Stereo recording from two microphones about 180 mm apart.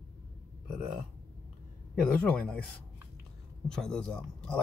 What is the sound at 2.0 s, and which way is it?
Speech, 10° left (ahead or behind).